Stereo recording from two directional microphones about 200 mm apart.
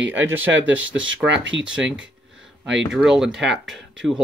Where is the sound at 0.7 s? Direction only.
70° right (ahead or behind).